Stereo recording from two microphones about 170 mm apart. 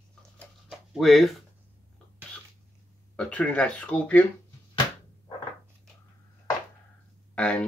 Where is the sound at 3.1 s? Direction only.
10° left (ahead or behind).